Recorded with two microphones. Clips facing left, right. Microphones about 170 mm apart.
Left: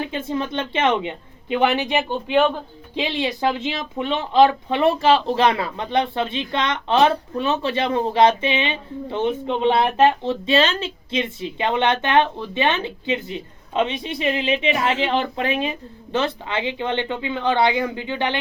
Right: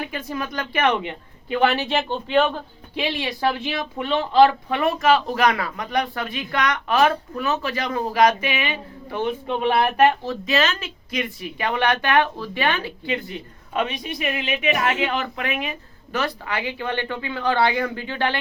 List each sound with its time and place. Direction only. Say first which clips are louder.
0.0 s speech: left 4 dB; 25° left (ahead or behind)